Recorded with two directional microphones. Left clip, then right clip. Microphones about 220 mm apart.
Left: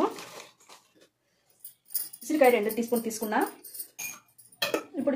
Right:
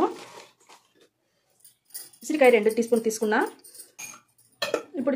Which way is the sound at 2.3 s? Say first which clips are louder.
Right 4 dB; 45° right (ahead or behind).